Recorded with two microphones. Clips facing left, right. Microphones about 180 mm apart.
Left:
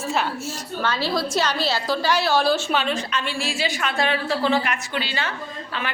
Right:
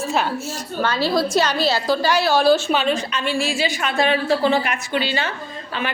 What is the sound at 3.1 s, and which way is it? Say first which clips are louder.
Speech: right 4 dB; 45° right (ahead or behind).